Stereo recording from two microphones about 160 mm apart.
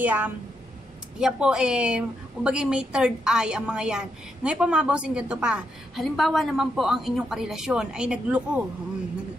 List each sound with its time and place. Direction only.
0.0 s a woman's voice: 10° right (ahead or behind)